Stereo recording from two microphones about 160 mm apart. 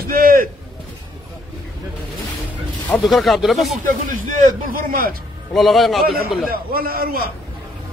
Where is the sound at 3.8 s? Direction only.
50° right (ahead or behind).